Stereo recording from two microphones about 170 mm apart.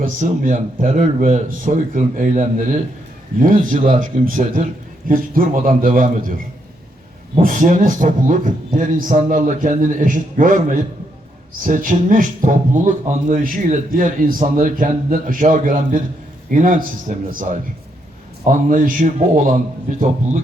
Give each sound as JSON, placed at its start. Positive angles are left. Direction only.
{"t": 0.0, "sound": "a man's voice", "side_deg": -45}